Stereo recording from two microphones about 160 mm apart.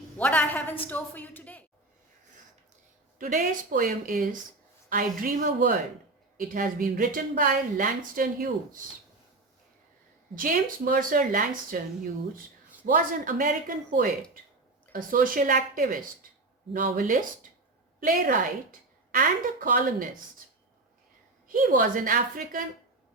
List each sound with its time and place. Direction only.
0.2 s a sound: 10° left (ahead or behind)
0.9 s a woman's voice: 10° left (ahead or behind)
3.2 s a woman's voice: 55° right (ahead or behind)
10.3 s a woman's voice: 60° right (ahead or behind)
19.1 s a woman's voice: 65° right (ahead or behind)
21.4 s a woman's voice: 60° right (ahead or behind)